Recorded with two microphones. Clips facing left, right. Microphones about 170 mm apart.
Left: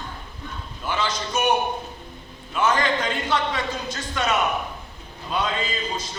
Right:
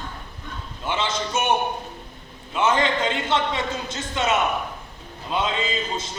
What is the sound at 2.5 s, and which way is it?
A man's voice, 25° right (ahead or behind).